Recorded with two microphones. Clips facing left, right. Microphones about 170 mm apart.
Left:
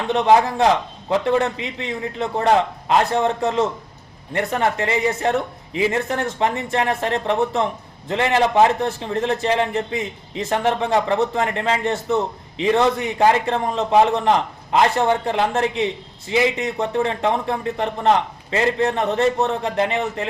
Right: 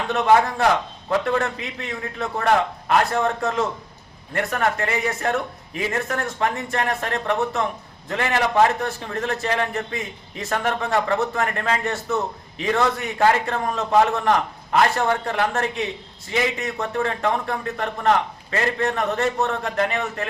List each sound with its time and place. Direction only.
0.1 s a man's voice: 25° left (ahead or behind)